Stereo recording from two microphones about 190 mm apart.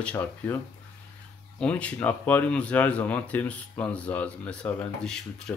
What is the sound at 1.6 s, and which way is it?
Speech, 5° left (ahead or behind).